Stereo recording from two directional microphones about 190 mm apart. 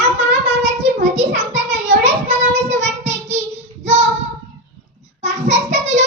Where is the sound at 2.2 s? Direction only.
35° right (ahead or behind).